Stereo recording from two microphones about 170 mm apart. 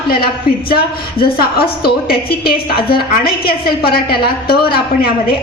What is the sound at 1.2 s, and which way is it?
A woman's voice, 65° left (ahead or behind).